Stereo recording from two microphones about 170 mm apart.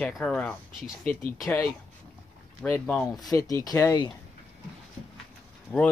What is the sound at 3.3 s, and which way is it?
Speech, 20° left (ahead or behind).